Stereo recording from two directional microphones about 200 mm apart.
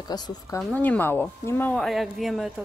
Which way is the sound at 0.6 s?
10° left (ahead or behind).